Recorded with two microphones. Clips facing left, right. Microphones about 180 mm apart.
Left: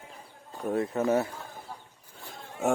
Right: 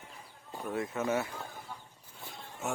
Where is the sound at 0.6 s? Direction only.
35° left (ahead or behind).